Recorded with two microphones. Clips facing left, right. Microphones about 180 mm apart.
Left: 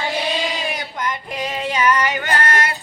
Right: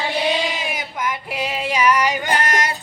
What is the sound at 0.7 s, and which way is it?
Female singing, 5° right (ahead or behind).